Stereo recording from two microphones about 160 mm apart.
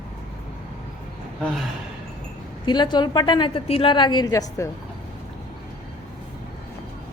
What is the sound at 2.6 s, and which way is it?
A woman's voice, 30° left (ahead or behind).